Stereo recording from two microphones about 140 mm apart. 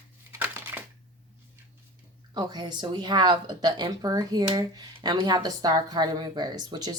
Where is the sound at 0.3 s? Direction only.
15° right (ahead or behind).